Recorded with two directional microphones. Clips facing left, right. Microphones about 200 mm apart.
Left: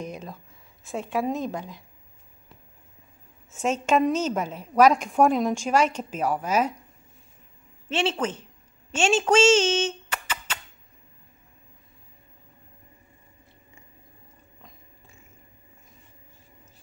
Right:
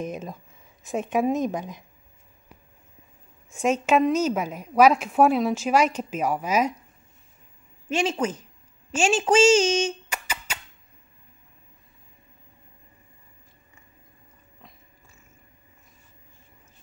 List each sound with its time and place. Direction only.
0.0 s a woman's voice: 20° right (ahead or behind)
3.5 s a woman's voice: 10° right (ahead or behind)
7.9 s a woman's voice: 10° right (ahead or behind)